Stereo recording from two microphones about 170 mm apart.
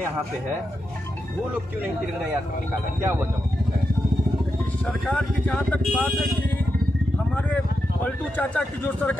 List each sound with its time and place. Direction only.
3.0 s speech: 15° right (ahead or behind)
4.8 s speech: 5° left (ahead or behind)
8.0 s speech: 10° left (ahead or behind)